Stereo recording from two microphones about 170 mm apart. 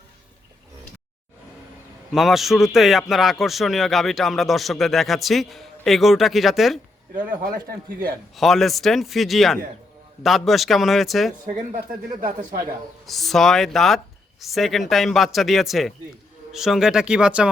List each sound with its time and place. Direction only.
2.1 s a man's voice: centre (ahead or behind)
7.3 s speech: 55° right (ahead or behind)
8.4 s a man's voice: centre (ahead or behind)
12.2 s speech: 55° right (ahead or behind)
13.1 s a man's voice: centre (ahead or behind)